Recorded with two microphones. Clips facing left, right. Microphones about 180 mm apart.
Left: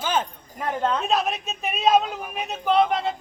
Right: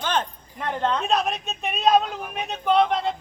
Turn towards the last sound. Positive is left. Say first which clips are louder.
# even
turn(degrees=0)  # may be behind; listen again after turning